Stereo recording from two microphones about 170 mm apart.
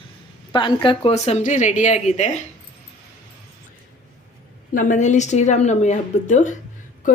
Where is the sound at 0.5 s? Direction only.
30° left (ahead or behind).